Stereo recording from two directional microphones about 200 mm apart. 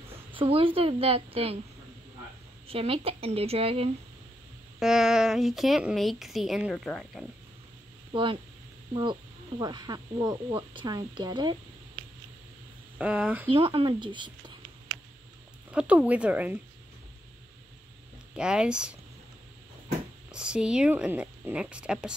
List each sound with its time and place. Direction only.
0.3 s speech: 25° right (ahead or behind)
2.7 s speech: 30° right (ahead or behind)
4.7 s a woman's voice: centre (ahead or behind)
8.1 s speech: 25° right (ahead or behind)
9.6 s speech: 20° right (ahead or behind)
12.9 s speech: 5° right (ahead or behind)
13.5 s speech: 25° right (ahead or behind)
15.7 s speech: 5° right (ahead or behind)
18.3 s a woman's voice: 5° right (ahead or behind)
20.2 s a woman's voice: 5° right (ahead or behind)